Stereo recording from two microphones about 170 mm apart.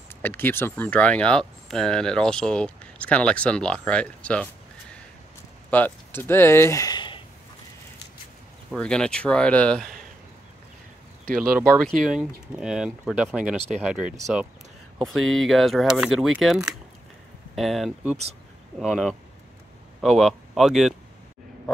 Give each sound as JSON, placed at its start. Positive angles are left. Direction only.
{"t": 0.1, "sound": "speech", "side_deg": 10}
{"t": 5.7, "sound": "speech", "side_deg": 10}
{"t": 8.7, "sound": "speech", "side_deg": 5}
{"t": 11.2, "sound": "speech", "side_deg": -60}
{"t": 12.0, "sound": "speech", "side_deg": -5}